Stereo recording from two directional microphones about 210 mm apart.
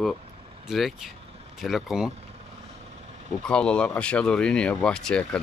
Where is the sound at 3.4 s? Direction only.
5° left (ahead or behind).